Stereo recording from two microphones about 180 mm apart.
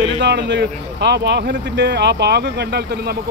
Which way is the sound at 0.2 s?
70° right (ahead or behind).